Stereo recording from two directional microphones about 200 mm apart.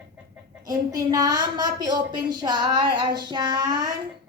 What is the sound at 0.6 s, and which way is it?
A woman's voice, 20° right (ahead or behind).